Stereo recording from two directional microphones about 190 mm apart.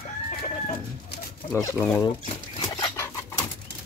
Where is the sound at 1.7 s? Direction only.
15° left (ahead or behind).